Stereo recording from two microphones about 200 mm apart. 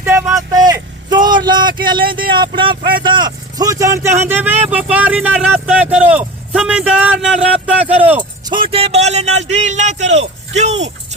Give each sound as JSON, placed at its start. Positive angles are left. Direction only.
{"t": 0.0, "sound": "vehicle", "side_deg": -10}
{"t": 2.0, "sound": "speech", "side_deg": -45}
{"t": 2.3, "sound": "speech", "side_deg": -25}
{"t": 8.2, "sound": "a sound", "side_deg": -25}